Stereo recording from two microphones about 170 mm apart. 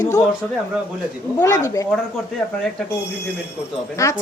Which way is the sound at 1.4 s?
20° left (ahead or behind).